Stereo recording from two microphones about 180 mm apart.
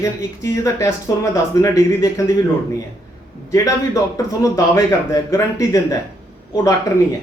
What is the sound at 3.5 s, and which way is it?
A man's voice, 20° left (ahead or behind).